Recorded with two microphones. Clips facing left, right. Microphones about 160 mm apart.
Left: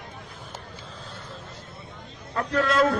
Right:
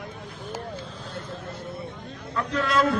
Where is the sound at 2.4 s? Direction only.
45° left (ahead or behind).